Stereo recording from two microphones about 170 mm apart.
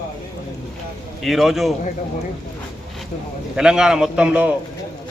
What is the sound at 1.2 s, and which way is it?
Speech, centre (ahead or behind).